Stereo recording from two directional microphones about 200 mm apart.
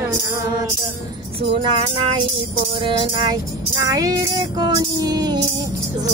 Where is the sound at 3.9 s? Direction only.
15° right (ahead or behind).